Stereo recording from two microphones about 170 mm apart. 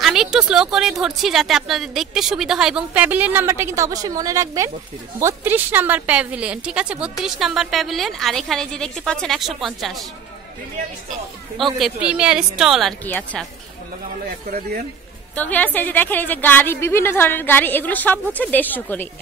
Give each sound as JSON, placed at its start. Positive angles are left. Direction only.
{"t": 0.0, "sound": "a woman's voice", "side_deg": 0}
{"t": 11.5, "sound": "a woman's voice", "side_deg": 0}
{"t": 13.0, "sound": "a woman's voice", "side_deg": 10}
{"t": 15.3, "sound": "a woman's voice", "side_deg": 10}